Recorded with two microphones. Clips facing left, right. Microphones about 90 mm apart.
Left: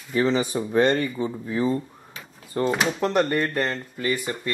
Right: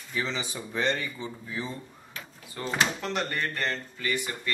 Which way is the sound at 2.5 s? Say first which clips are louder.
Left 6 dB; 40° left (ahead or behind).